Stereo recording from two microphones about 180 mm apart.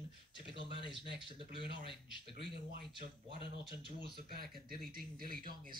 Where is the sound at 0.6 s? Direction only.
30° left (ahead or behind).